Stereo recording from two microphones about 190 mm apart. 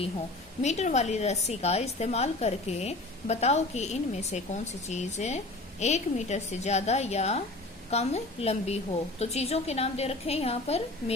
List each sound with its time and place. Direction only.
0.6 s a woman's voice: 35° left (ahead or behind)